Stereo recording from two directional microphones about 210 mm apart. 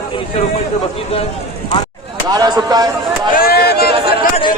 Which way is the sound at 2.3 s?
20° right (ahead or behind).